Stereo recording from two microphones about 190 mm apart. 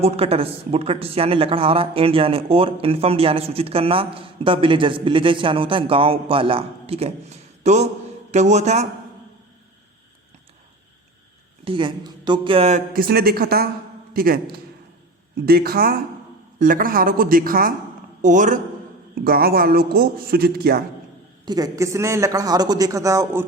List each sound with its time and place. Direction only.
0.0 s a man's voice: 30° right (ahead or behind)
11.6 s speech: 25° right (ahead or behind)
12.9 s a woman's voice: 50° right (ahead or behind)
19.1 s a man's voice: 50° right (ahead or behind)
21.4 s speech: 20° right (ahead or behind)